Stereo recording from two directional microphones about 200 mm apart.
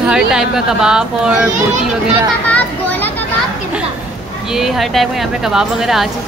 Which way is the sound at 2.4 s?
5° left (ahead or behind).